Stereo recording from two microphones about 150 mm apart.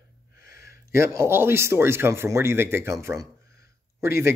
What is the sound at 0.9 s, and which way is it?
A man's voice, 20° right (ahead or behind).